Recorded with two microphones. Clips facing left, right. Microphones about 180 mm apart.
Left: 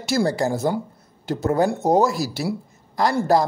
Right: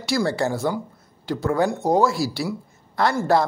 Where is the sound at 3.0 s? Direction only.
35° left (ahead or behind).